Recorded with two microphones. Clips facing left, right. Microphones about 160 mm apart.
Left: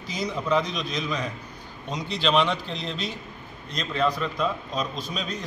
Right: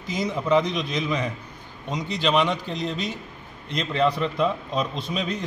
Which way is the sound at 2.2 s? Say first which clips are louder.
Right 1 dB; 15° right (ahead or behind).